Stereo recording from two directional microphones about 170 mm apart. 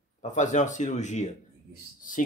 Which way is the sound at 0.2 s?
45° left (ahead or behind).